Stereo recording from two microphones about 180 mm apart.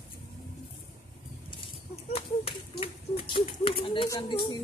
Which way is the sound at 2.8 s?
30° left (ahead or behind).